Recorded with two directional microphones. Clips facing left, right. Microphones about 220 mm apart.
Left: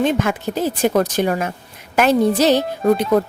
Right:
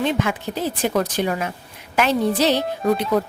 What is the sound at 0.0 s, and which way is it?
A woman's voice, 45° left (ahead or behind).